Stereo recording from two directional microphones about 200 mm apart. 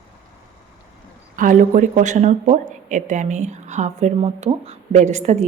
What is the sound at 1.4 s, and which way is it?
Speech, 40° right (ahead or behind).